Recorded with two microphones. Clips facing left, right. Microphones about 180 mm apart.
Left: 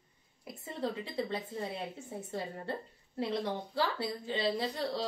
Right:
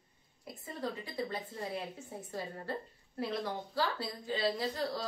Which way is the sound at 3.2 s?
25° left (ahead or behind).